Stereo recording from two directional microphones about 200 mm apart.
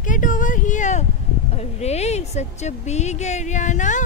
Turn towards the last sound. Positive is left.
turn(degrees=40)  # may be behind; listen again after turning